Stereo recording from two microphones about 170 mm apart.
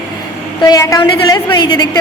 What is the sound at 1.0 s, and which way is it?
Speech, 25° left (ahead or behind).